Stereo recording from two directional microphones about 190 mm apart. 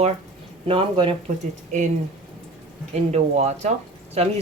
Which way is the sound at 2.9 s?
35° right (ahead or behind).